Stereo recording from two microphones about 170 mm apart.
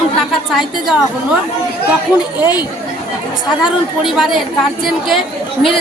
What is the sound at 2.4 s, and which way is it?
Speech, 25° left (ahead or behind).